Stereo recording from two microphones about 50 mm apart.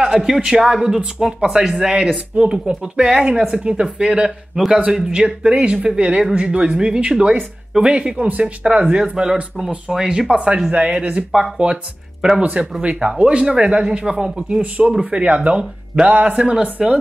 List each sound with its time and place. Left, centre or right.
0.0 s speech: centre
4.6 s speech: centre
5.1 s speech: right
9.1 s speech: centre
14.3 s speech: right